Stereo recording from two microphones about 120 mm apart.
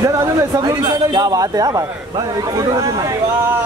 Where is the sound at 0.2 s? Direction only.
35° right (ahead or behind).